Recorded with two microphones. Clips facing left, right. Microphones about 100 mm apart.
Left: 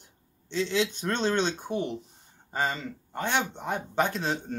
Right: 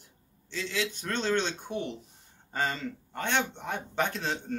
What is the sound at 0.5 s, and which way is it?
A man's voice, 25° left (ahead or behind).